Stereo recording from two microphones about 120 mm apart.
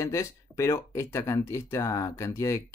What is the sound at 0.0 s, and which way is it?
Speech, 25° left (ahead or behind).